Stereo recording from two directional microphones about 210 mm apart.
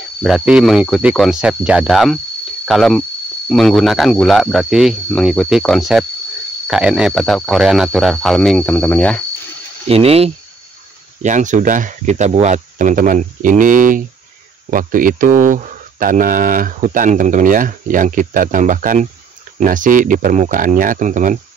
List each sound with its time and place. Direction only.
0.2 s speech: 5° right (ahead or behind)
9.8 s speech: 30° right (ahead or behind)